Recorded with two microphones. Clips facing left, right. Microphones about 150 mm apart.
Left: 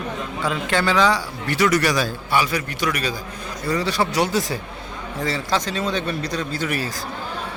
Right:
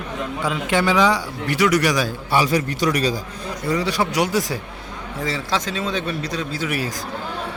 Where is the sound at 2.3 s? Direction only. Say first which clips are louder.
Right 6 dB; 35° right (ahead or behind).